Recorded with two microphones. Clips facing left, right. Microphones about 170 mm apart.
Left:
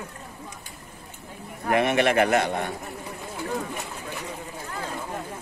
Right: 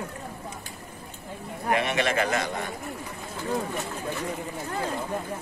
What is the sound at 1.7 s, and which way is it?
A man's voice, 55° left (ahead or behind).